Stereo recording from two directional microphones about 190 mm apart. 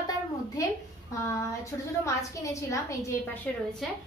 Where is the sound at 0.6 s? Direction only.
15° left (ahead or behind).